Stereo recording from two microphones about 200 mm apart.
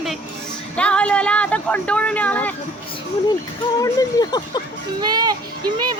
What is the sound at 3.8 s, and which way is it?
Speech, 20° left (ahead or behind).